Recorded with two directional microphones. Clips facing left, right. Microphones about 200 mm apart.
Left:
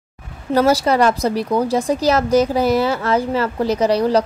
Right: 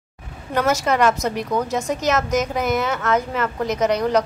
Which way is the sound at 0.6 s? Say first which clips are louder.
Left 4 dB; 35° left (ahead or behind).